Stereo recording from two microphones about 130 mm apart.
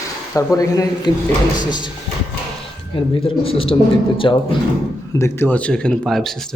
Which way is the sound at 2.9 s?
45° left (ahead or behind).